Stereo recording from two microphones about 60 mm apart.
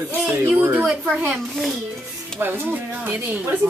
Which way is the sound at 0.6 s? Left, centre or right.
Right.